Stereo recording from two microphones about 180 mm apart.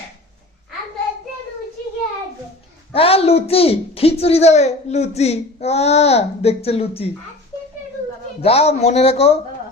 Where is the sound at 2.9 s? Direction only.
35° left (ahead or behind).